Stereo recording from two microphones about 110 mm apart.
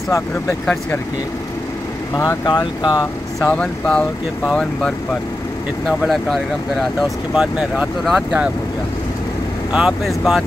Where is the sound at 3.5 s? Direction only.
10° left (ahead or behind).